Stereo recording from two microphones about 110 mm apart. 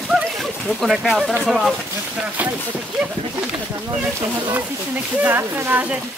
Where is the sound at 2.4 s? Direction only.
15° right (ahead or behind).